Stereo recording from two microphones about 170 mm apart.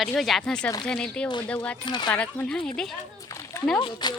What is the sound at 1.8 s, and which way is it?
Speech, 25° left (ahead or behind).